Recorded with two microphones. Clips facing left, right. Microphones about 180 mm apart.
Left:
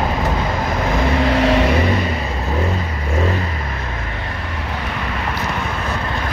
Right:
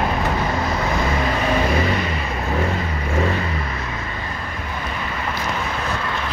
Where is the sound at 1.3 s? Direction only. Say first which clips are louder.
Left 5 dB; 85° left.